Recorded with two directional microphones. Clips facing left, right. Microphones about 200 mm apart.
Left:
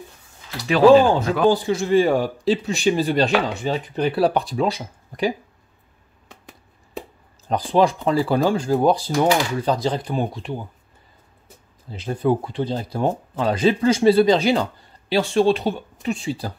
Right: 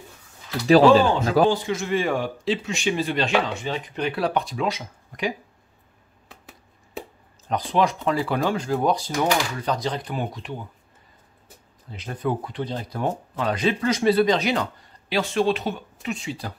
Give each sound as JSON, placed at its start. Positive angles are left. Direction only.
{"t": 0.7, "sound": "speech", "side_deg": -35}
{"t": 1.5, "sound": "speech", "side_deg": 35}
{"t": 6.2, "sound": "a sound", "side_deg": -5}
{"t": 7.4, "sound": "speech", "side_deg": 35}
{"t": 11.9, "sound": "speech", "side_deg": 30}